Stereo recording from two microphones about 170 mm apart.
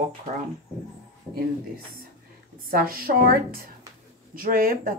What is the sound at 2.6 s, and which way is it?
A woman's voice, 60° right (ahead or behind).